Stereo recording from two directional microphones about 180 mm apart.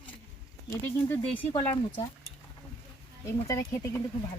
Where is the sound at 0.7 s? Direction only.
15° left (ahead or behind).